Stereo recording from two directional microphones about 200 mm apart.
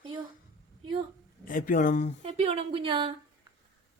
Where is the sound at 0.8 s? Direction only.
25° right (ahead or behind).